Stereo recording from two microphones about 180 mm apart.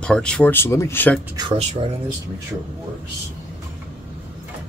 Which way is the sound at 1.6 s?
40° right (ahead or behind).